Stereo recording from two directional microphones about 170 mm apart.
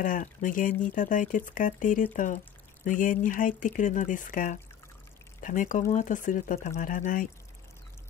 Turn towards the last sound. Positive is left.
turn(degrees=50)  # may be behind; listen again after turning